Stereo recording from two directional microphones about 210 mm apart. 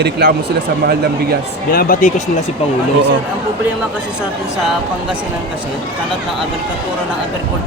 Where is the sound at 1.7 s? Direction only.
40° left (ahead or behind).